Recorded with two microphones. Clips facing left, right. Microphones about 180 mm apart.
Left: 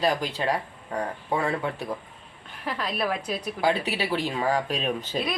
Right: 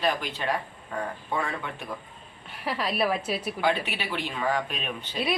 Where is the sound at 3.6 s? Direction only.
35° left (ahead or behind).